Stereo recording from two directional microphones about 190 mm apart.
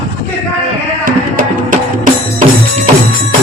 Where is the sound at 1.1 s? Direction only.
45° right (ahead or behind).